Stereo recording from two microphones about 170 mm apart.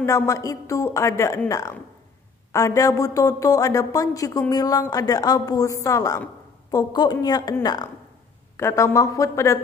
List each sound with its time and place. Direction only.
0.0 s a woman's voice: 20° left (ahead or behind)